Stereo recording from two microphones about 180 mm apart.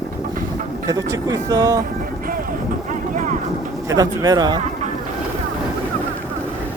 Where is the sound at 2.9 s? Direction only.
45° right (ahead or behind).